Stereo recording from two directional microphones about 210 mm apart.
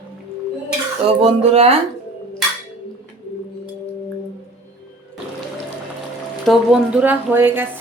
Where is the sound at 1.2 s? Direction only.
30° right (ahead or behind).